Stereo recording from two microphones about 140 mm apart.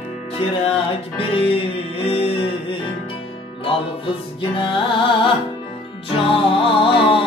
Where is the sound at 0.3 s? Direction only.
40° left (ahead or behind).